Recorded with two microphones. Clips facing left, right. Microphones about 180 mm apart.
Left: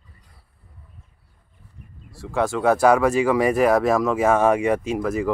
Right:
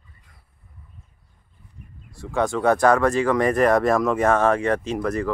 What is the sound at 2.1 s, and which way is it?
Speech, centre (ahead or behind).